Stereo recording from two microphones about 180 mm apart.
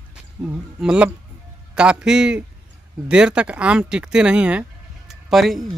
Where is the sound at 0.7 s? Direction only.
5° right (ahead or behind).